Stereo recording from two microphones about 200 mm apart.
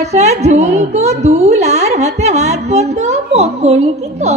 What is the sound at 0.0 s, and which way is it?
A woman's voice, 35° right (ahead or behind).